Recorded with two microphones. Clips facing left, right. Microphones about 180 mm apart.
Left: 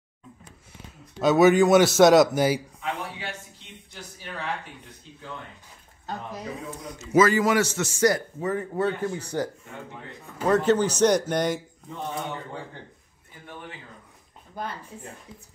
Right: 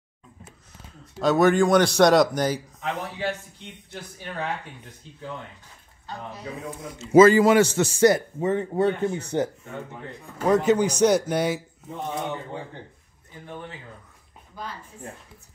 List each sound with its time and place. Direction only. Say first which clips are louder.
1.2 s a man's voice: left 1 dB; centre (ahead or behind)
7.0 s a man's voice: right 6 dB; 25° right (ahead or behind)
10.4 s speech: right 1 dB; 10° right (ahead or behind)
14.5 s a woman's voice: left 3 dB; 55° left (ahead or behind)